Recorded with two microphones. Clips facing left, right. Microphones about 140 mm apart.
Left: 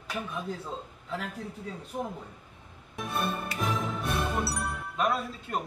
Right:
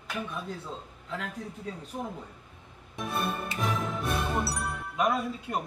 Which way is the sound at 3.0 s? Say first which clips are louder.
Right 1 dB; centre (ahead or behind).